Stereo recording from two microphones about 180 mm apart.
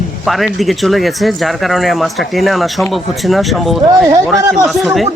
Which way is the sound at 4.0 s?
20° right (ahead or behind).